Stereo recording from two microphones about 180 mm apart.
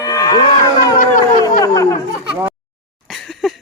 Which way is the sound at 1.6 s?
20° left (ahead or behind).